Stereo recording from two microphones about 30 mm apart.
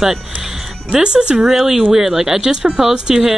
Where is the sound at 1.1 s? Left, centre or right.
Right.